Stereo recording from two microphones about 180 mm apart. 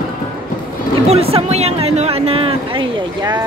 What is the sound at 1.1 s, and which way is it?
Speech, 35° right (ahead or behind).